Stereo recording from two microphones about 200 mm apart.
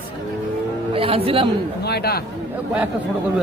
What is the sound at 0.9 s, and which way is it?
Speech, 30° right (ahead or behind).